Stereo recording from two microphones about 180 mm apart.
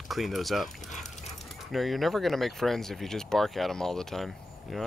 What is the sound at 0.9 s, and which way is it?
Dog, 40° left (ahead or behind).